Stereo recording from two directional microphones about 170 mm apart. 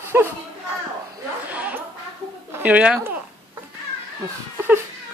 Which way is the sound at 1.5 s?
10° right (ahead or behind).